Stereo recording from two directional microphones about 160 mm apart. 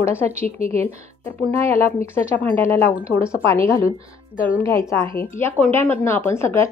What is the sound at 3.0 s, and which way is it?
Speech, 10° right (ahead or behind).